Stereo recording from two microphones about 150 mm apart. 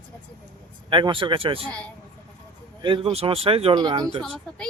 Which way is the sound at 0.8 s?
35° right (ahead or behind).